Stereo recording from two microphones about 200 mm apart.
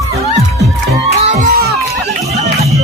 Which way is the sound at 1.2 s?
35° right (ahead or behind).